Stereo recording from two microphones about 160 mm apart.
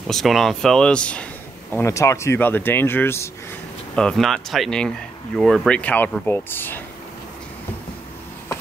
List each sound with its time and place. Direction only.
0.1 s speech: centre (ahead or behind)
3.9 s speech: 5° left (ahead or behind)